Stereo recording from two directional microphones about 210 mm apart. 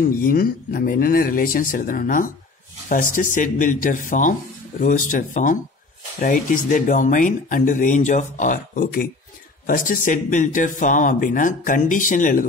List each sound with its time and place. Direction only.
0.2 s speech: 45° left (ahead or behind)